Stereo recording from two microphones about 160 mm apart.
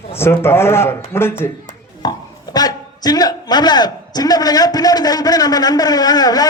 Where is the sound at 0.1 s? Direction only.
15° left (ahead or behind).